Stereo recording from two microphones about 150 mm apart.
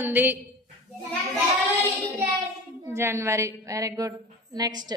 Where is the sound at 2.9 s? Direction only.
20° right (ahead or behind).